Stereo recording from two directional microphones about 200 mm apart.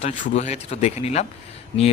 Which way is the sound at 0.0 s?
40° left (ahead or behind).